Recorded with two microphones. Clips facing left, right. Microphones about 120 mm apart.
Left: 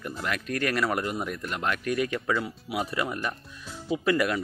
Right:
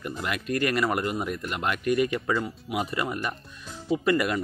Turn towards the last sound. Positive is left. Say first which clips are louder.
# right 1 dB
turn(degrees=0)  # may be behind; listen again after turning